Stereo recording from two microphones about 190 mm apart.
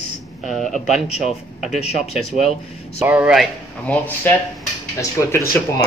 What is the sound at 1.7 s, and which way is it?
Speech, 35° left (ahead or behind).